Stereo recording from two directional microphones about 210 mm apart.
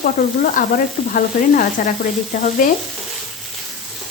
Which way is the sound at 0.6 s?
40° left (ahead or behind).